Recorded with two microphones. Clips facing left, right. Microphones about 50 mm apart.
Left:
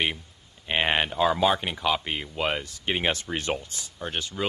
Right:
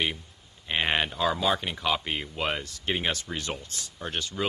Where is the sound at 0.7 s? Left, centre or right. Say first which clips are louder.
Left 2 dB; centre.